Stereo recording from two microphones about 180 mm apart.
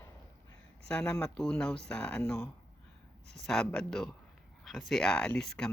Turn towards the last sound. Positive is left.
turn(degrees=5)  # may be behind; listen again after turning